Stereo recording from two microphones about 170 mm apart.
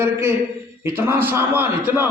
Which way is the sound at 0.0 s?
10° right (ahead or behind).